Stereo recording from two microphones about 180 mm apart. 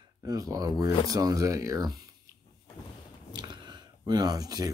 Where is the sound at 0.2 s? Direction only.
20° right (ahead or behind).